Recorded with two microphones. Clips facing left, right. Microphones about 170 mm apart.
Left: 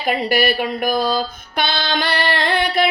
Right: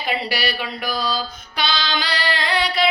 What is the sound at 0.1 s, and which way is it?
A woman's voice, 50° left (ahead or behind).